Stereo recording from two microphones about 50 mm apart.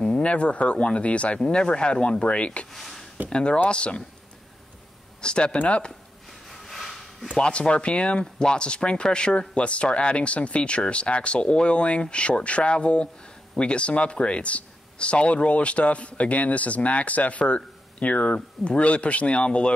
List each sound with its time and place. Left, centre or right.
0.0 s speech: left
2.7 s a sound: centre
3.3 s speech: centre
5.2 s speech: centre
6.6 s a sound: centre
7.3 s speech: left